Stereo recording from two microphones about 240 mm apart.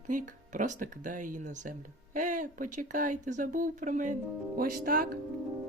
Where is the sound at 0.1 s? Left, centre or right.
Right.